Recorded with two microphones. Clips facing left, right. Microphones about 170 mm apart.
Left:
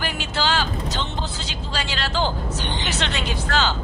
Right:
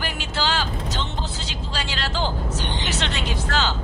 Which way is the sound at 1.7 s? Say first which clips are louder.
Left 2 dB; 65° left (ahead or behind).